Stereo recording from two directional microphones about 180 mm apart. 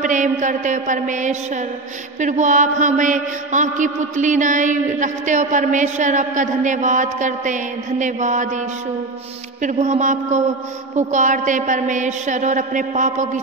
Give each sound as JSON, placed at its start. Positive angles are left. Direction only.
{"t": 0.0, "sound": "mantra", "side_deg": -45}
{"t": 9.6, "sound": "speech", "side_deg": -45}
{"t": 11.0, "sound": "mantra", "side_deg": -40}